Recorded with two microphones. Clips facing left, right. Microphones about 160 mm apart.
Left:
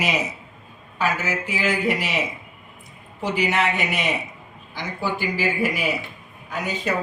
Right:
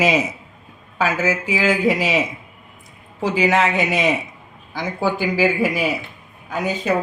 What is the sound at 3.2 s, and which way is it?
Speech, 90° right.